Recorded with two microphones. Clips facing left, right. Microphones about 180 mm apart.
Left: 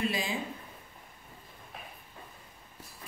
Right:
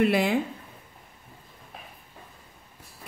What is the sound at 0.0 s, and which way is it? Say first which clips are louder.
Speech: right 10 dB; 65° right (ahead or behind).